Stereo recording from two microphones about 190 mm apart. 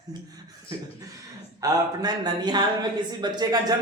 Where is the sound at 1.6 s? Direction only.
20° right (ahead or behind).